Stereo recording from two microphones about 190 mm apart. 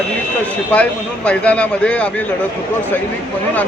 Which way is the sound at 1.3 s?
5° left (ahead or behind).